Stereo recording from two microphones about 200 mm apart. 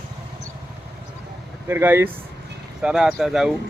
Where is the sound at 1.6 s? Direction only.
10° right (ahead or behind).